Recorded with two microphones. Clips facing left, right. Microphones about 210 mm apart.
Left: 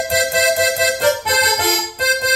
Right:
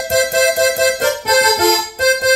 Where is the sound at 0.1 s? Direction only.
45° right (ahead or behind).